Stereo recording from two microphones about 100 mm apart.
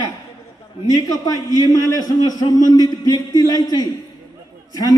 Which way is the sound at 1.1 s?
40° left (ahead or behind).